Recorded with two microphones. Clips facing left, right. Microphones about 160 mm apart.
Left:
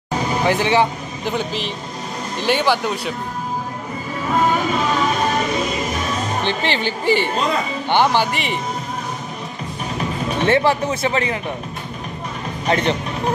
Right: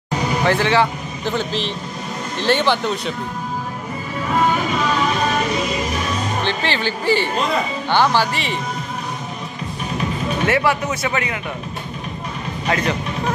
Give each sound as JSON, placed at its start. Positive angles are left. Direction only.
{"t": 0.5, "sound": "speech", "side_deg": 15}
{"t": 6.4, "sound": "speech", "side_deg": 15}
{"t": 10.4, "sound": "speech", "side_deg": 30}
{"t": 12.6, "sound": "speech", "side_deg": 30}